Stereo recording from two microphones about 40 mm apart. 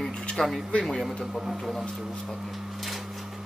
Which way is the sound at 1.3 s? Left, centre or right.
Centre.